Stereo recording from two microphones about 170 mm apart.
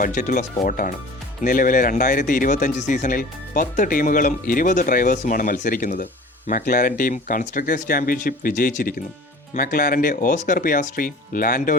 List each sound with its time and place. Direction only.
0.0 s speech: 50° left (ahead or behind)